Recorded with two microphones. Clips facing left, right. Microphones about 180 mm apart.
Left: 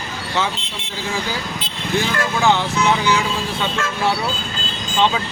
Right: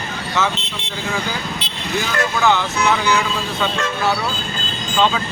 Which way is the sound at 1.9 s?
30° left (ahead or behind).